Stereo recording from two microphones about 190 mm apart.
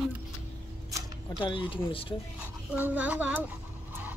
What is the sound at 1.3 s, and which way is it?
Speech, 25° left (ahead or behind).